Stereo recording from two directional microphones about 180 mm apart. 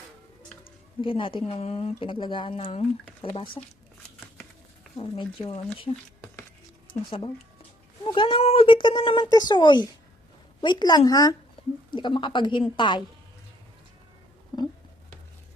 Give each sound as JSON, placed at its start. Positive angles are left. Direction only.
{"t": 1.0, "sound": "speech", "side_deg": 30}
{"t": 4.9, "sound": "speech", "side_deg": 25}
{"t": 8.0, "sound": "speech", "side_deg": 30}
{"t": 14.5, "sound": "a sound", "side_deg": 25}